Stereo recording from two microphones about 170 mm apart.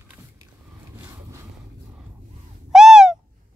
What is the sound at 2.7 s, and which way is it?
Owl, 5° right (ahead or behind).